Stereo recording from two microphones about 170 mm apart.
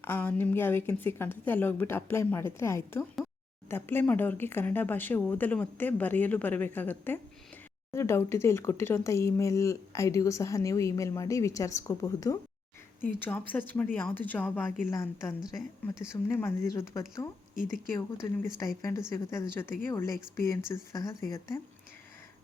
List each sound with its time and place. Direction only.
0.0 s speech: 10° left (ahead or behind)
15.4 s speech: 5° right (ahead or behind)
16.3 s speech: 15° left (ahead or behind)
18.8 s speech: 15° left (ahead or behind)